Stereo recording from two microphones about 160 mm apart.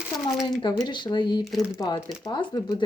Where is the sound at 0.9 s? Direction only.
30° left (ahead or behind).